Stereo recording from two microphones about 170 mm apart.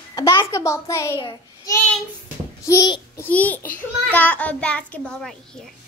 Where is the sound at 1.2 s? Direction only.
20° left (ahead or behind).